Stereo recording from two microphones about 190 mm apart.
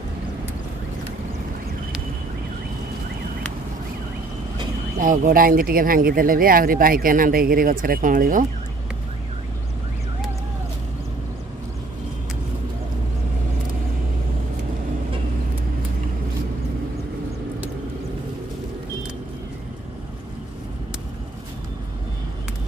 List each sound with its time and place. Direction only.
4.9 s speech: 45° right (ahead or behind)